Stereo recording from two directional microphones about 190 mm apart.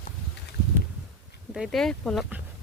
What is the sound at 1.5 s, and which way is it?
Speech, centre (ahead or behind).